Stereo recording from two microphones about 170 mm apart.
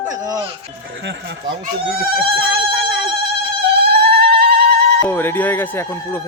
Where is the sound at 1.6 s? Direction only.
60° right (ahead or behind).